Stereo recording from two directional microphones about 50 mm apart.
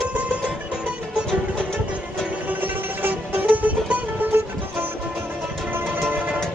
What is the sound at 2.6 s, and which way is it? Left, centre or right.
Music, right.